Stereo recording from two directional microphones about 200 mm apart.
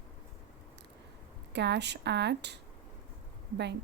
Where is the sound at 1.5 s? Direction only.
60° right (ahead or behind).